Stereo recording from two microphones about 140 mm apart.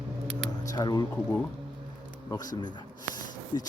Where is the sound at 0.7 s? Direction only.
30° left (ahead or behind).